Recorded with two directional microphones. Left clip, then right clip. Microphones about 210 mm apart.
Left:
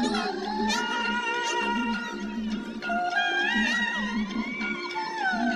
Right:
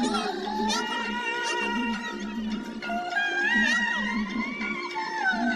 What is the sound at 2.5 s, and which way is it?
Music, 55° left (ahead or behind).